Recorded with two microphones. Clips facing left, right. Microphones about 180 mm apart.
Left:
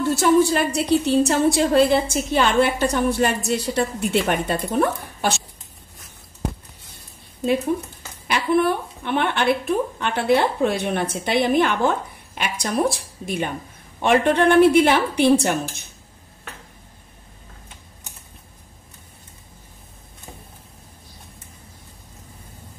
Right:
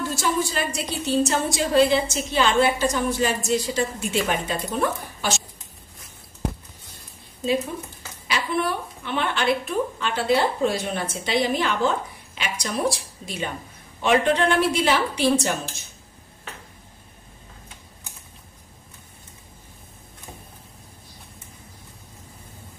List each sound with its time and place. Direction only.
0.1 s a woman's voice: 60° left (ahead or behind)
7.4 s a woman's voice: 60° left (ahead or behind)